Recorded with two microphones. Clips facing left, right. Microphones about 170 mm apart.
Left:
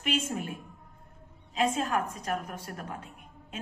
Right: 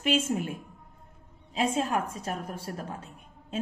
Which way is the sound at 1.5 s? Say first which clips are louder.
Right 1 dB; 30° right (ahead or behind).